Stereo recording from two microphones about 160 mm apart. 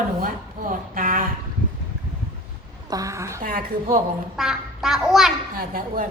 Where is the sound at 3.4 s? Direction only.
60° right (ahead or behind).